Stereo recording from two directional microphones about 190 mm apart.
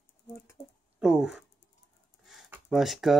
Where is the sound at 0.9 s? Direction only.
5° right (ahead or behind).